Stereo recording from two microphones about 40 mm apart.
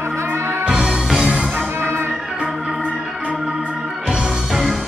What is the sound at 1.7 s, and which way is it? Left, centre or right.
Music, right.